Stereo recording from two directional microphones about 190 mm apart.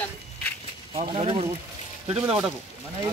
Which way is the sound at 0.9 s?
30° right (ahead or behind).